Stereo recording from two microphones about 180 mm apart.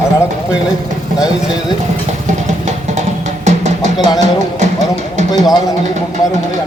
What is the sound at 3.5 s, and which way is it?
Music, 40° right (ahead or behind).